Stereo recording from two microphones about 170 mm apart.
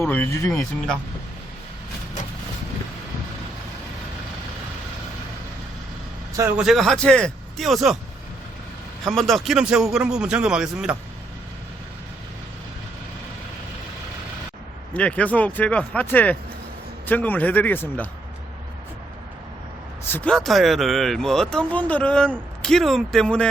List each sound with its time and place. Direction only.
0.0 s speech: 10° left (ahead or behind)
6.6 s speech: centre (ahead or behind)
9.0 s speech: centre (ahead or behind)
14.9 s speech: 5° left (ahead or behind)
20.1 s speech: 10° left (ahead or behind)